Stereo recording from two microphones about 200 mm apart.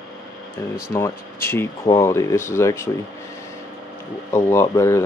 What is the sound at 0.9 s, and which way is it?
Speech, 15° left (ahead or behind).